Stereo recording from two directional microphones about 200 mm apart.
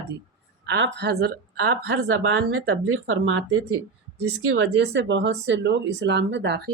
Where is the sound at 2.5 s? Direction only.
90° right.